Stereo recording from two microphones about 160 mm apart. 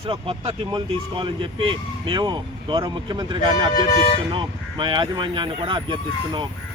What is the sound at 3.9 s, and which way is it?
Speech, 50° left (ahead or behind).